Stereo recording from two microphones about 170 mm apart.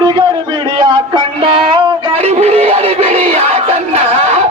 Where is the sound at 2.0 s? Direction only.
40° right (ahead or behind).